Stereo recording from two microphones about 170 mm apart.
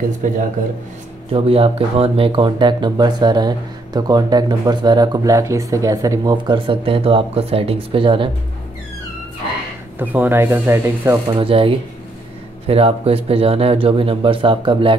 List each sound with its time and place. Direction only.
0.2 s speech: 50° right (ahead or behind)
1.3 s speech: 35° right (ahead or behind)
9.9 s speech: 10° right (ahead or behind); by 15.0 s 30° right (ahead or behind)